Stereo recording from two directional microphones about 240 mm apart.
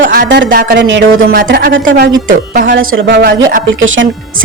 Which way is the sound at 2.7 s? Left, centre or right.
Right.